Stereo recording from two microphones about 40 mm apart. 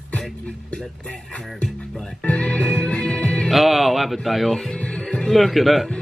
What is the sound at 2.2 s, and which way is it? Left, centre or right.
Music, left.